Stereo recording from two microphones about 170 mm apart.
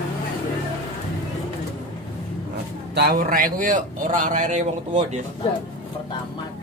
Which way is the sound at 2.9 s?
65° right (ahead or behind).